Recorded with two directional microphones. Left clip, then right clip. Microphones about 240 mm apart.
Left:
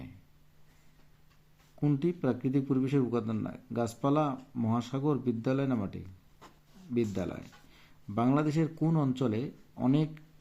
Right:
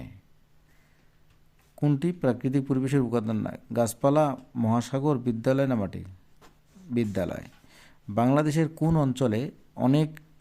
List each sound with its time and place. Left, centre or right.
1.8 s speech: right